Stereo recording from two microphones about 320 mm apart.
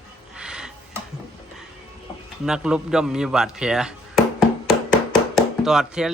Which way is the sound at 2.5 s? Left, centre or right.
Centre.